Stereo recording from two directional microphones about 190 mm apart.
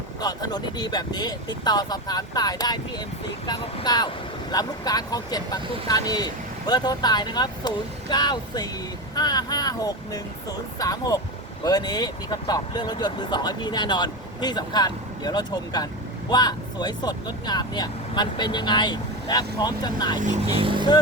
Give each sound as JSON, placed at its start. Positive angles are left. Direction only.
{"t": 0.2, "sound": "speech", "side_deg": 20}
{"t": 20.1, "sound": "speech", "side_deg": -40}